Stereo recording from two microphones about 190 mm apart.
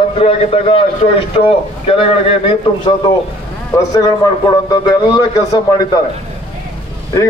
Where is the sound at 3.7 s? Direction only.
20° left (ahead or behind).